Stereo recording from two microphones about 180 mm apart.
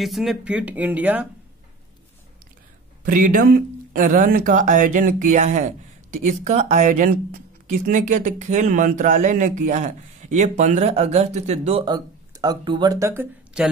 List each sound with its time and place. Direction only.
0.0 s speech: centre (ahead or behind)
3.0 s speech: 50° right (ahead or behind)
11.8 s speech: 20° right (ahead or behind)